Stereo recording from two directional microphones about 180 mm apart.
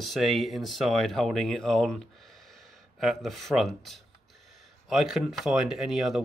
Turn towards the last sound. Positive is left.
turn(degrees=0)  # may be behind; listen again after turning